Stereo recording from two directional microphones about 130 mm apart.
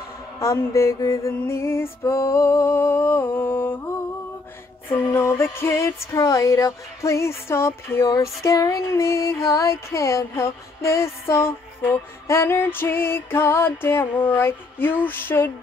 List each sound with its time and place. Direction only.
0.4 s music: 20° left (ahead or behind)
4.8 s music: 20° left (ahead or behind)